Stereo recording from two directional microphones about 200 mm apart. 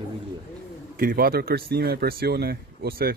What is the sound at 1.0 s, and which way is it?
Speech, 50° right (ahead or behind).